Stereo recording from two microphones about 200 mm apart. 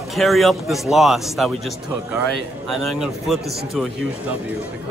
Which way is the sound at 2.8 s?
Centre (ahead or behind).